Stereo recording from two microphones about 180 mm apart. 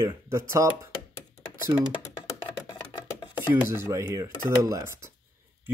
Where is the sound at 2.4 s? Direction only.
25° left (ahead or behind).